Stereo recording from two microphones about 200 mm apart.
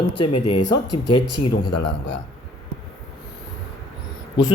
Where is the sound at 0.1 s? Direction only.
25° left (ahead or behind).